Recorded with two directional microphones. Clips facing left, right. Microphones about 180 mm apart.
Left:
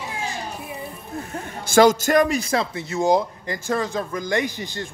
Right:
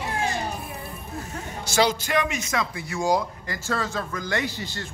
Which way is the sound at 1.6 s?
50° left (ahead or behind).